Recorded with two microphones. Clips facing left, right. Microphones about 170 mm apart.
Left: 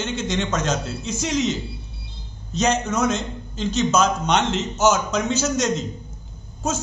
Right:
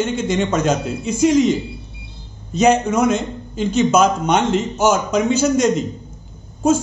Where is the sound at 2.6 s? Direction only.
10° right (ahead or behind).